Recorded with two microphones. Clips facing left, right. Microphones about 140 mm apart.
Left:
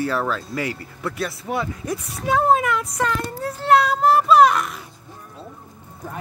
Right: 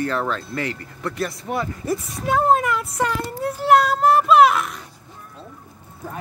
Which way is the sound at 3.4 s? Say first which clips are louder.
Right 1 dB; 5° right (ahead or behind).